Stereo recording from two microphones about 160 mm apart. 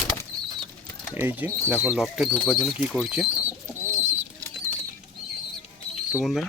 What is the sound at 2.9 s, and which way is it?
Bird, 5° right (ahead or behind).